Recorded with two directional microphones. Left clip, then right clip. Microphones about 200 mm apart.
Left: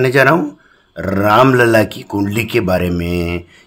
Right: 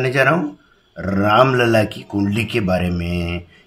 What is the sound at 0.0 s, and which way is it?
Speech, 45° left (ahead or behind).